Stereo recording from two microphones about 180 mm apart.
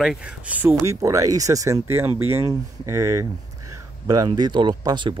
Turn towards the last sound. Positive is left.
turn(degrees=-25)  # may be behind; listen again after turning